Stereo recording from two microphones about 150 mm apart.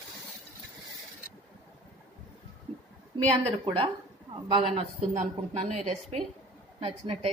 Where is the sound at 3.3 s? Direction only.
35° right (ahead or behind).